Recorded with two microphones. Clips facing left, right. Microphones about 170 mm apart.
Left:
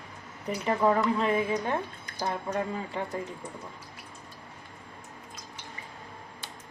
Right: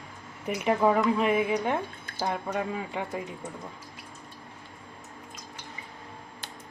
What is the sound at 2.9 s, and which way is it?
Speech, 10° right (ahead or behind).